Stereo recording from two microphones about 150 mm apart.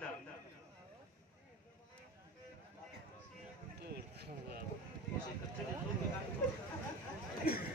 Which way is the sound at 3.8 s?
90° right.